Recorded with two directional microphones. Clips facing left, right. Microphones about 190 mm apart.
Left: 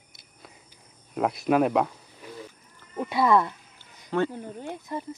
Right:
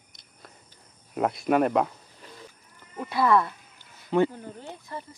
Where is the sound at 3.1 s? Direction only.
20° left (ahead or behind).